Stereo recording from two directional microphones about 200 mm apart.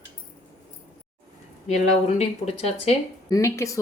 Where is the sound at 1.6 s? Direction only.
35° left (ahead or behind).